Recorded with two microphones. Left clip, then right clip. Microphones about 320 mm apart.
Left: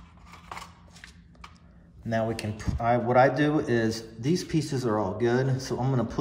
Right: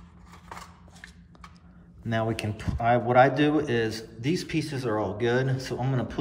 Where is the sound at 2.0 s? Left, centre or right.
Centre.